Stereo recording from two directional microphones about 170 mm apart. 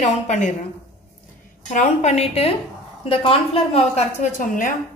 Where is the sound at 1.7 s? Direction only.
45° left (ahead or behind).